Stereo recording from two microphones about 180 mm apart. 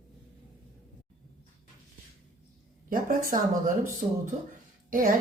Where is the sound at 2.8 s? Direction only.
50° right (ahead or behind).